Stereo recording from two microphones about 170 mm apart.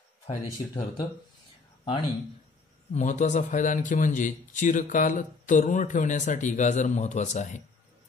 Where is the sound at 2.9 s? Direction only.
45° left (ahead or behind).